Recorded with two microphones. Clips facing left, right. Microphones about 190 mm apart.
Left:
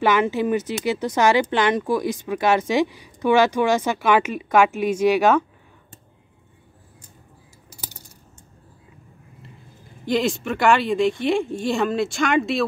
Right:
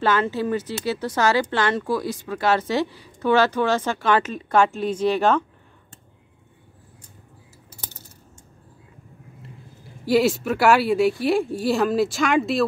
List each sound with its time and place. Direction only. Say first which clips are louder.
0.0 s speech: left 2 dB; 15° left (ahead or behind)
10.0 s speech: right 3 dB; 5° right (ahead or behind)